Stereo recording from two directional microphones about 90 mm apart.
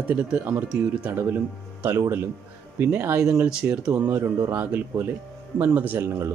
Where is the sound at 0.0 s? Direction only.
20° right (ahead or behind).